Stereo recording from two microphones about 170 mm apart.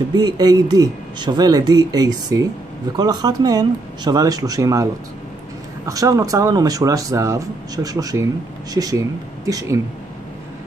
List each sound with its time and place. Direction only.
0.1 s speech: 25° right (ahead or behind)
5.9 s speech: 20° right (ahead or behind)